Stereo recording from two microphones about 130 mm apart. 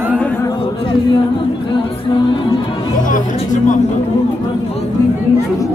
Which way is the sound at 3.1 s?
85° left.